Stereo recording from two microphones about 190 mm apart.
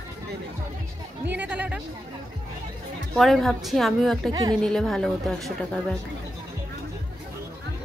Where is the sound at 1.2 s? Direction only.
10° right (ahead or behind).